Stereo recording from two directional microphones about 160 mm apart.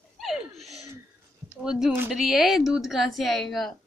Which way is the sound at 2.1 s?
Centre (ahead or behind).